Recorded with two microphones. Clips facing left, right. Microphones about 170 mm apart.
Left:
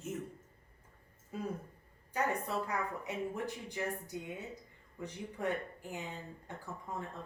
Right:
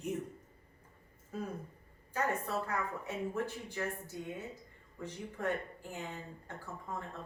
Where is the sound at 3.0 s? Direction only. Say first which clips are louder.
Right 1 dB; 15° left (ahead or behind).